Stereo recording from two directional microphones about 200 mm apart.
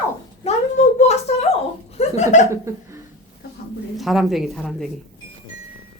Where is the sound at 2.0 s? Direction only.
35° left (ahead or behind).